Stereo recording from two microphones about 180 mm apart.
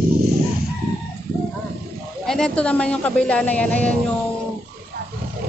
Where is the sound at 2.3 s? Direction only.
5° left (ahead or behind).